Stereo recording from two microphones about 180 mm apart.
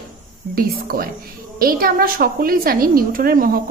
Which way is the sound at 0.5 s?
55° right (ahead or behind).